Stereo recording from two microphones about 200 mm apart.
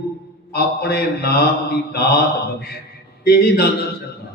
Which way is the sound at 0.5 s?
55° left (ahead or behind).